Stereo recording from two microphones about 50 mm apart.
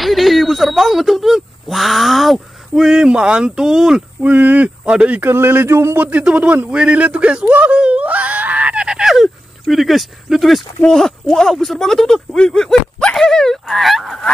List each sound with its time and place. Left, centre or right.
0.0 s speech: centre
4.2 s speech: right
5.2 s speech: right
5.7 s speech: right
5.9 s speech: right
7.7 s a sound: right; by 10.6 s centre
10.8 s speech: centre